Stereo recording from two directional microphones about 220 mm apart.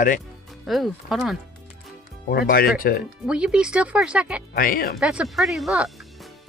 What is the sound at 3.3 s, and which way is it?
Speech, 5° right (ahead or behind).